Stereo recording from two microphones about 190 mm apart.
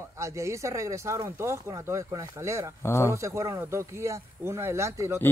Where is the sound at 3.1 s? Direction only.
15° right (ahead or behind).